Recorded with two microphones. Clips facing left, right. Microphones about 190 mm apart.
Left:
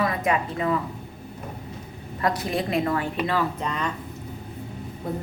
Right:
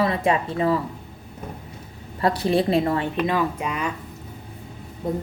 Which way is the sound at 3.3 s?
10° right (ahead or behind).